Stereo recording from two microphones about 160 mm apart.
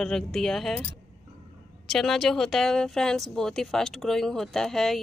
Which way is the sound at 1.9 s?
Centre (ahead or behind).